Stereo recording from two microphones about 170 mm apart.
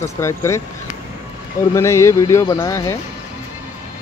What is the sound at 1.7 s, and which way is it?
Speech, 15° left (ahead or behind).